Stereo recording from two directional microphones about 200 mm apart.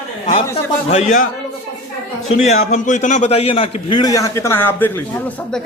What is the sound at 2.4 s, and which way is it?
A man's voice, 35° left (ahead or behind).